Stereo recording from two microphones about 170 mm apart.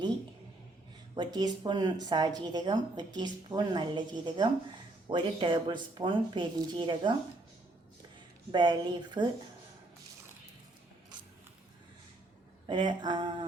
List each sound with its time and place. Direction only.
1.1 s speech: 25° right (ahead or behind)
8.5 s speech: 25° right (ahead or behind)
12.6 s speech: 25° right (ahead or behind)